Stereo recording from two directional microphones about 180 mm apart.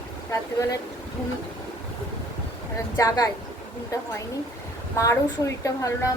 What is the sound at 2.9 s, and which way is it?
Speech, 20° left (ahead or behind).